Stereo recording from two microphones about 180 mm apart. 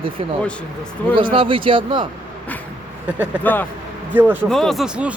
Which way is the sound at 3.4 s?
10° left (ahead or behind).